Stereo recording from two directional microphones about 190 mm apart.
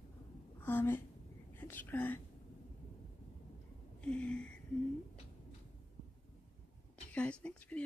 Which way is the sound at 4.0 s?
5° left (ahead or behind).